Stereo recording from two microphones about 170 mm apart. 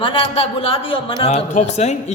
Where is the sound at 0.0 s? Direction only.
30° left (ahead or behind).